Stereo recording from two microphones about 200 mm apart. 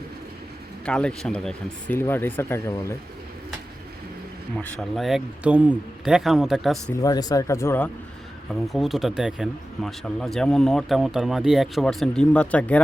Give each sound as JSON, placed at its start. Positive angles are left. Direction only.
{"t": 0.9, "sound": "speech", "side_deg": 5}
{"t": 4.5, "sound": "speech", "side_deg": 0}
{"t": 6.9, "sound": "speech", "side_deg": 20}
{"t": 8.6, "sound": "speech", "side_deg": 0}